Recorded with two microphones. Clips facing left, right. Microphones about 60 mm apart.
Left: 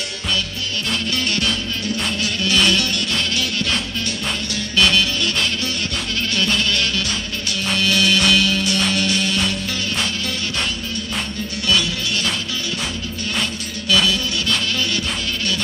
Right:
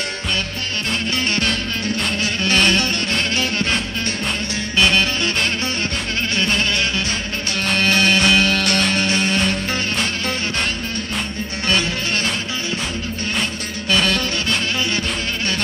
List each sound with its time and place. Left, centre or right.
1.1 s music: right
5.0 s music: right
7.5 s music: right
8.5 s music: right
8.9 s music: right
11.6 s music: right
13.8 s music: right